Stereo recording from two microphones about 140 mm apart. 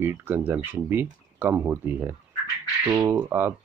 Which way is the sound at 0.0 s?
15° right (ahead or behind).